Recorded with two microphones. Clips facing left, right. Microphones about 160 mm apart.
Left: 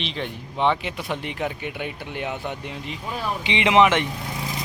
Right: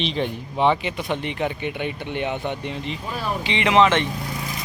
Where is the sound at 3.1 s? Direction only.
20° left (ahead or behind).